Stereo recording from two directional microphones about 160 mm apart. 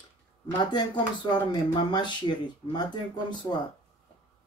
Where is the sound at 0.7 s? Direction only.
25° left (ahead or behind).